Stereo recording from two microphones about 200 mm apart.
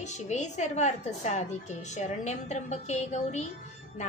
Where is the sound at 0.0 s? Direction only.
35° left (ahead or behind).